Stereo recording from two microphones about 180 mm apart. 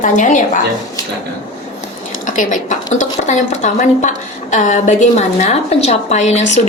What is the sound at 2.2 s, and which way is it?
A woman's voice, 45° left (ahead or behind).